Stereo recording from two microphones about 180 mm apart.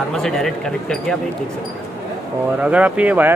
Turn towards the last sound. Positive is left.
turn(degrees=-10)  # may be behind; listen again after turning